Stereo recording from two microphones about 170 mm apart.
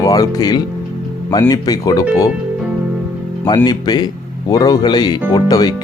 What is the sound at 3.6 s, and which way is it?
Speech, 25° left (ahead or behind).